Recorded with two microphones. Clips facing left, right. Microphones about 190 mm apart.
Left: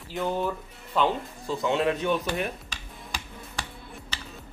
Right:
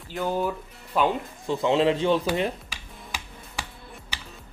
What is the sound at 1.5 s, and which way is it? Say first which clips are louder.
Speech: right 4 dB; 25° right (ahead or behind).